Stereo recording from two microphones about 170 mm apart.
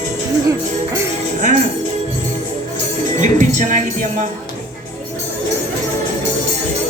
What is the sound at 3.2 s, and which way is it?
Music, 50° right (ahead or behind).